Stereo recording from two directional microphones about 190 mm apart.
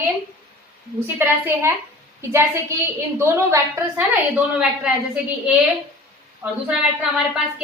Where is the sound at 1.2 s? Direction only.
10° right (ahead or behind).